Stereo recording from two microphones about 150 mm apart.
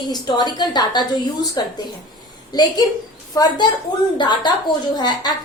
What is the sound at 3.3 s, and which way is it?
Speech, 25° left (ahead or behind).